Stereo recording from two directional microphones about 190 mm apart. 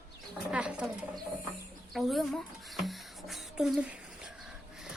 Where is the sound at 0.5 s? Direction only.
5° right (ahead or behind).